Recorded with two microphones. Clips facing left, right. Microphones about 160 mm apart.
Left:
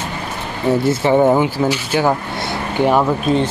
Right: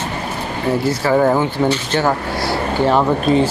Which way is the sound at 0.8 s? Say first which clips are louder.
Left 2 dB; 20° left (ahead or behind).